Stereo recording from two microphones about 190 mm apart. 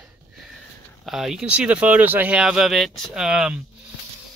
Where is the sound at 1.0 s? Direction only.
Centre (ahead or behind).